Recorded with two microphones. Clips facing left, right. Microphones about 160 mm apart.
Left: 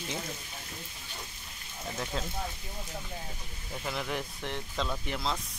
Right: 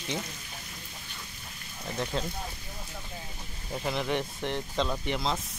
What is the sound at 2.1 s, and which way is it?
Speech, centre (ahead or behind).